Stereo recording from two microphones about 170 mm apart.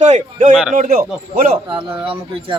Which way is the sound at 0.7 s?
55° right (ahead or behind).